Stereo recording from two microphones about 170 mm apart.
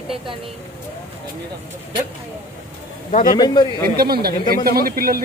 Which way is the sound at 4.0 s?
65° right (ahead or behind).